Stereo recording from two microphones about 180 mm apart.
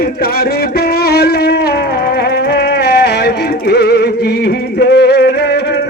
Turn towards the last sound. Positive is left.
turn(degrees=65)  # may be behind; listen again after turning